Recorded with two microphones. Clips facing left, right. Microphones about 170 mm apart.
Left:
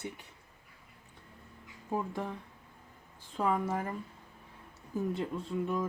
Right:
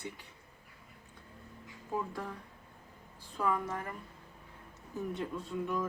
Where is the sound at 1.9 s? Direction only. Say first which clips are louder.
Left 3 dB; 20° left (ahead or behind).